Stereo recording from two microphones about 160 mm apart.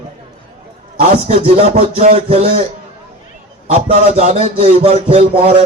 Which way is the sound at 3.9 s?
40° right (ahead or behind).